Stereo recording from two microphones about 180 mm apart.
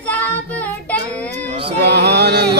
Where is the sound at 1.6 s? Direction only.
70° right (ahead or behind).